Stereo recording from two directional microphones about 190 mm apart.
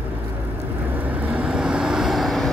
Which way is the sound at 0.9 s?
10° right (ahead or behind).